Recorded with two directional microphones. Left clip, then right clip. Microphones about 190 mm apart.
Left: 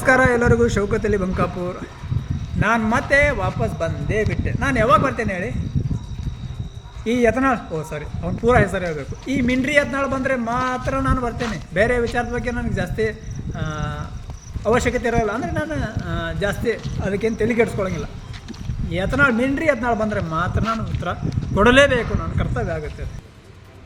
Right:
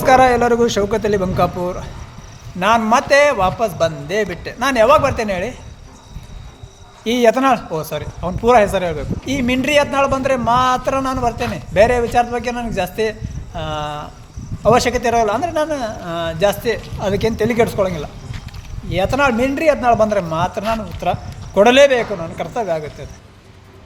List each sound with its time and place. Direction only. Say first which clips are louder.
0.2 s a man's voice: right 4 dB; 15° left (ahead or behind)
7.0 s a man's voice: right 5 dB; 10° left (ahead or behind)
11.3 s a man's voice: right 6 dB; 5° left (ahead or behind)
20.6 s speech: right 4 dB; centre (ahead or behind)
21.0 s speech: right 6 dB; 20° left (ahead or behind)
22.5 s speech: right 7 dB; 5° left (ahead or behind)